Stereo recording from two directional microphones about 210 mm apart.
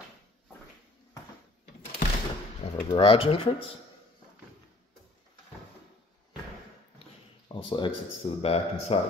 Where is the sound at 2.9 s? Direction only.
25° left (ahead or behind).